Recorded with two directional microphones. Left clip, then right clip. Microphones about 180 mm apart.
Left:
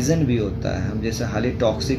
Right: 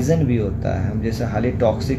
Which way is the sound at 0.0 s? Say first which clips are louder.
Right 1 dB; 15° right (ahead or behind).